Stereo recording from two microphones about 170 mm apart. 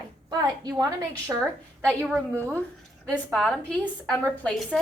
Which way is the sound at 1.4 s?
5° right (ahead or behind).